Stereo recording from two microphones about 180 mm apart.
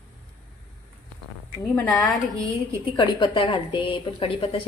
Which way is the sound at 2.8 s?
25° left (ahead or behind).